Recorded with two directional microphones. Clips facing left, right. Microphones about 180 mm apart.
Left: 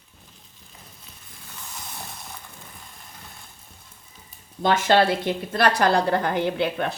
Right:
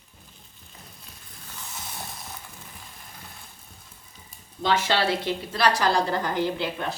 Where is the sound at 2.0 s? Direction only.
Centre (ahead or behind).